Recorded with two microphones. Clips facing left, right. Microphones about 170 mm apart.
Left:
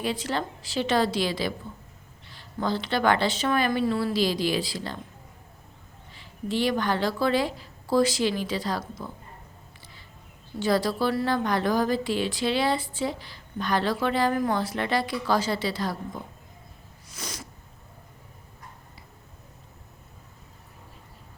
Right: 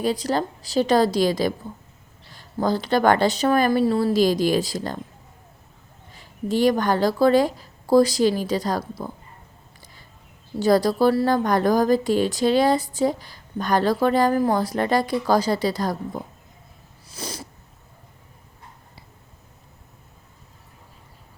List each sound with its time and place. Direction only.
0.0 s a woman's voice: 40° right (ahead or behind)
6.1 s speech: 45° right (ahead or behind)
10.6 s a woman's voice: 40° right (ahead or behind)
17.1 s cat: 30° right (ahead or behind)